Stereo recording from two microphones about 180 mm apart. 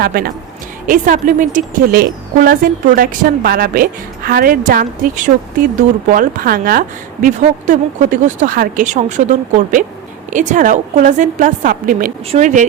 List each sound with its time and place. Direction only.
0.0 s speech: 55° right (ahead or behind)